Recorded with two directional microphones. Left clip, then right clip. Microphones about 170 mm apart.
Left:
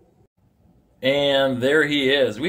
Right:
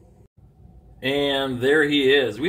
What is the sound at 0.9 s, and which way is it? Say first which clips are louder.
Speech: left 4 dB; 20° left (ahead or behind).